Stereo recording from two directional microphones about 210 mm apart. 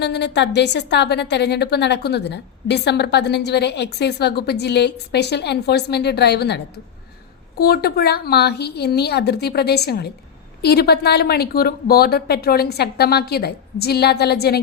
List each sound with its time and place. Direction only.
0.0 s a woman's voice: 55° left (ahead or behind)
7.6 s a woman's voice: 50° left (ahead or behind)